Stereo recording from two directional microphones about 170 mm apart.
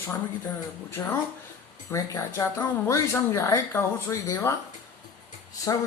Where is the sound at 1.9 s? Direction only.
15° left (ahead or behind).